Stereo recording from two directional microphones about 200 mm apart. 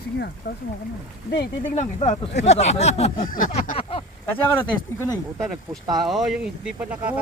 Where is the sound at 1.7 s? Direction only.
35° left (ahead or behind).